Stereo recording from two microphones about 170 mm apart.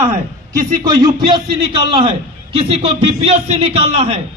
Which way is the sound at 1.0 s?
30° right (ahead or behind).